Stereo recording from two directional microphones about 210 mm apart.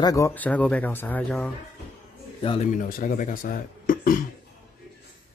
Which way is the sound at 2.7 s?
45° left (ahead or behind).